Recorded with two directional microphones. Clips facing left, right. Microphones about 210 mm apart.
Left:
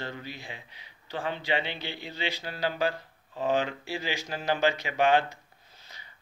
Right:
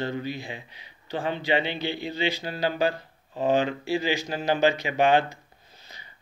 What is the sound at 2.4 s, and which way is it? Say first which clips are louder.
Speech: right 4 dB; 30° right (ahead or behind).